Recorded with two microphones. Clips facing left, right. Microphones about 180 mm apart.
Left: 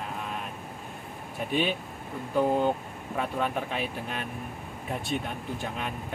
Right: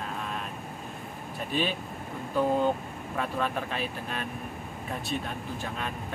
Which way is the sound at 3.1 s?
10° left (ahead or behind).